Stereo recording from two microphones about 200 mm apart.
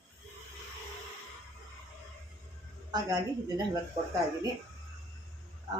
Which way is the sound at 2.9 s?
20° right (ahead or behind).